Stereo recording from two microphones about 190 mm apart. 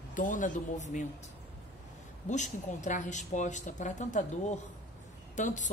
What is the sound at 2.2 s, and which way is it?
A woman's voice, 40° left (ahead or behind).